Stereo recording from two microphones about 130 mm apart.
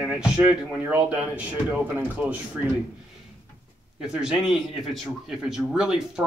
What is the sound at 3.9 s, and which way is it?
A man's voice, 5° right (ahead or behind).